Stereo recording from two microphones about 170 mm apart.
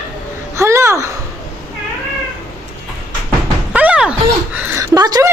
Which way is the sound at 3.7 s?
5° right (ahead or behind).